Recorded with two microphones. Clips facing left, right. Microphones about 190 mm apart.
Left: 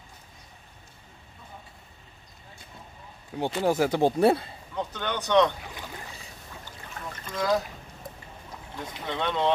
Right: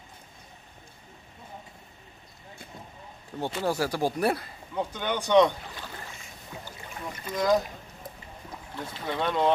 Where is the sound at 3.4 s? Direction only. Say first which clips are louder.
Left 4 dB; 15° left (ahead or behind).